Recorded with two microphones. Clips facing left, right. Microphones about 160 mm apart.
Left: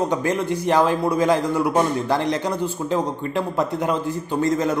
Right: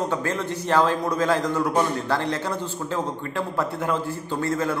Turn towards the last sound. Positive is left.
turn(degrees=15)  # may be behind; listen again after turning